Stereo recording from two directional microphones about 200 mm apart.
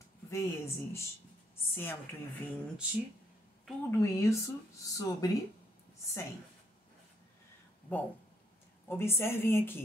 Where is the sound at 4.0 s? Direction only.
15° left (ahead or behind).